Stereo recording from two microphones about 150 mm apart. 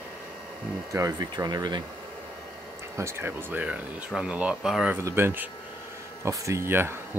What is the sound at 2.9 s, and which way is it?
Speech, 15° right (ahead or behind).